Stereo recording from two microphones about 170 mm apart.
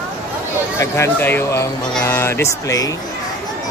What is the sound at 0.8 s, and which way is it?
Speech, 15° left (ahead or behind).